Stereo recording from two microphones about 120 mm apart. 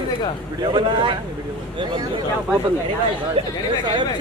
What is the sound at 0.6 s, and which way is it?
Speech, 40° right (ahead or behind).